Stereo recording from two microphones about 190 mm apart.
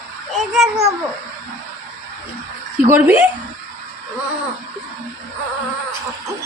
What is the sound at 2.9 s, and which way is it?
Speech, 10° right (ahead or behind).